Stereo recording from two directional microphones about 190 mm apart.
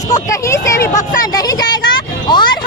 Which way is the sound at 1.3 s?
20° left (ahead or behind).